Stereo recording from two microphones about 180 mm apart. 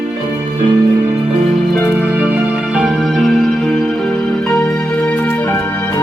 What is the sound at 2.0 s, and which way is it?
Music, 5° right (ahead or behind).